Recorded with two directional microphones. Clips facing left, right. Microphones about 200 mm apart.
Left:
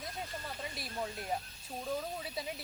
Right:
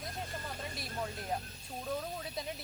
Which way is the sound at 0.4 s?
Centre (ahead or behind).